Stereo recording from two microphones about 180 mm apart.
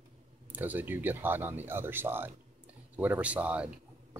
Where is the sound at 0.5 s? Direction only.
10° right (ahead or behind).